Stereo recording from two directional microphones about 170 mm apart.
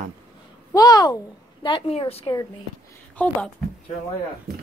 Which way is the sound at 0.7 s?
25° left (ahead or behind).